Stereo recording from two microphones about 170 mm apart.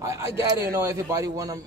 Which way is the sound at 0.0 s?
15° right (ahead or behind).